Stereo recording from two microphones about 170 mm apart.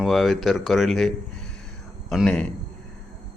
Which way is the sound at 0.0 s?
Centre (ahead or behind).